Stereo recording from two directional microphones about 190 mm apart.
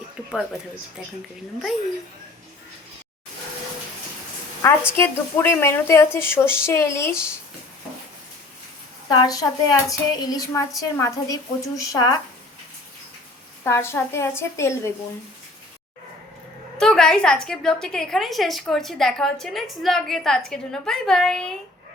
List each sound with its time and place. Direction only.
4.6 s a woman's voice: 15° left (ahead or behind)
9.0 s a woman's voice: 20° left (ahead or behind)
13.7 s a woman's voice: 15° left (ahead or behind)
16.8 s a woman's voice: 5° left (ahead or behind)